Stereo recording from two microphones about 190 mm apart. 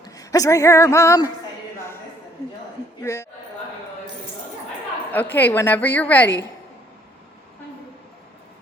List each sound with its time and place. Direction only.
0.0 s speech: 20° left (ahead or behind)
3.0 s a woman's voice: 15° left (ahead or behind)
5.1 s a woman's voice: 10° left (ahead or behind)